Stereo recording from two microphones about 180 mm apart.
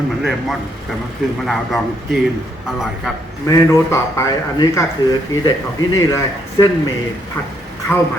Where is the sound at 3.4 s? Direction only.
15° left (ahead or behind).